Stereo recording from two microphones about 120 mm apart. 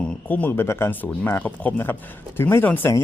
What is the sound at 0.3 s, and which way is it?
Speech, 15° left (ahead or behind).